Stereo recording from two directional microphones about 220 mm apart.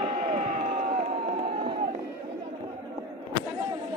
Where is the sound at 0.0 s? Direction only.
35° right (ahead or behind).